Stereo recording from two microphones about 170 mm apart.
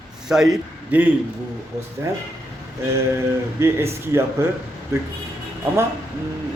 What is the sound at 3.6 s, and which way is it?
Speech, 15° right (ahead or behind).